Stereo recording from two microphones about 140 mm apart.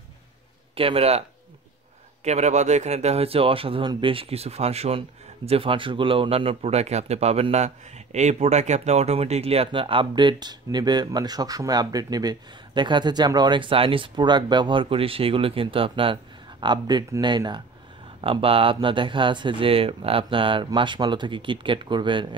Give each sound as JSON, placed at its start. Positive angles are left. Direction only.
{"t": 0.7, "sound": "speech", "side_deg": -40}
{"t": 2.2, "sound": "speech", "side_deg": -55}